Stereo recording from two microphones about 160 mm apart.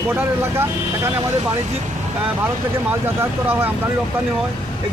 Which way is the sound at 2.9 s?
15° right (ahead or behind).